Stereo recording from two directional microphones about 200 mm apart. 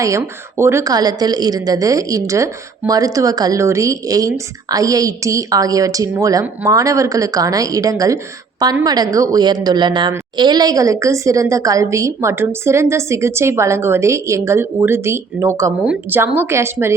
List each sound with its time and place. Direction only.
0.0 s a woman's voice: 15° right (ahead or behind)